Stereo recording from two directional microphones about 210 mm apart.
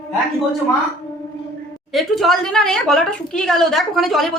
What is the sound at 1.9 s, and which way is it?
A woman's voice, centre (ahead or behind).